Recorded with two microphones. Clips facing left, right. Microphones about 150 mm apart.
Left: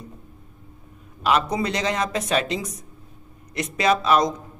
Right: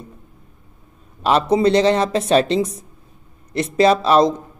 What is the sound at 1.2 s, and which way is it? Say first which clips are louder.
Speech: right 7 dB; 30° right (ahead or behind).